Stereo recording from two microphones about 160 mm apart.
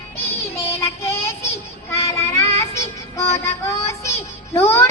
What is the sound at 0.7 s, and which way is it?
Child singing, 15° left (ahead or behind).